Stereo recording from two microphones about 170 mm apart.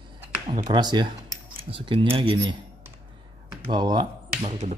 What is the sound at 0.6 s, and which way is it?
Speech, 25° right (ahead or behind).